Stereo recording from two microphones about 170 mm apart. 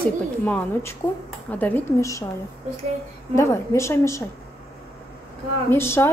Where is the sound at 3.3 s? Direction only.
15° left (ahead or behind).